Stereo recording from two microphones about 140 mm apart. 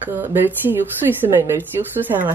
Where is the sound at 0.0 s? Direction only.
15° right (ahead or behind).